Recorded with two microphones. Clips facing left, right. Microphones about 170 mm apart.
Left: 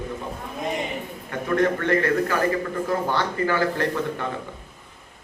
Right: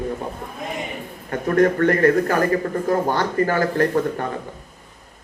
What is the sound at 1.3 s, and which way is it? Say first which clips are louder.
A man's voice: right 4 dB; 45° right (ahead or behind).